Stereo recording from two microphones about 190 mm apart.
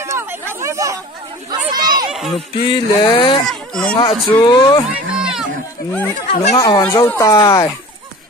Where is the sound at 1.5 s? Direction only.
20° right (ahead or behind).